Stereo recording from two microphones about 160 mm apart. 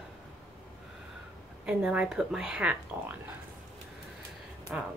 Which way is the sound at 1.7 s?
5° right (ahead or behind).